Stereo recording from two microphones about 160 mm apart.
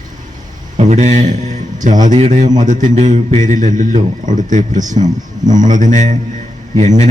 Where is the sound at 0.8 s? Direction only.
45° right (ahead or behind).